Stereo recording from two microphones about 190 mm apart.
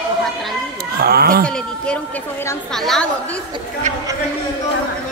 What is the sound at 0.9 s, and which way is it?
Speech, 50° right (ahead or behind).